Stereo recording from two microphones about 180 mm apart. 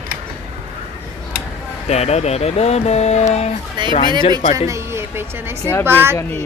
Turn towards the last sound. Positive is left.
turn(degrees=-15)  # may be behind; listen again after turning